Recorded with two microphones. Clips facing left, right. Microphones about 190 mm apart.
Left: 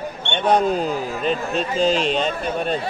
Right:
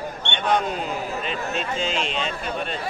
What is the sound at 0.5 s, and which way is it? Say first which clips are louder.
A man's voice: left 5 dB; 40° left (ahead or behind).